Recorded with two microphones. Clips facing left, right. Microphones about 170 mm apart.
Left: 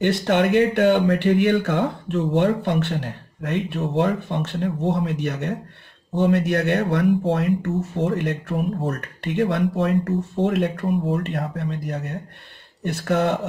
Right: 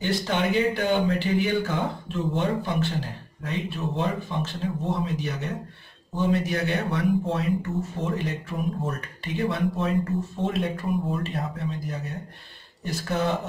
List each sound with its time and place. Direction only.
0.0 s speech: 65° left (ahead or behind)